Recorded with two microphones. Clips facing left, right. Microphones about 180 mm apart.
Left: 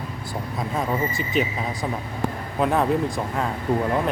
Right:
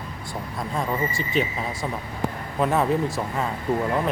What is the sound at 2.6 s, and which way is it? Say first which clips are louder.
Speech: left 1 dB; centre (ahead or behind).